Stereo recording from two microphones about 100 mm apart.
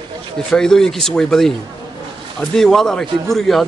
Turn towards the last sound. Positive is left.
turn(degrees=5)  # may be behind; listen again after turning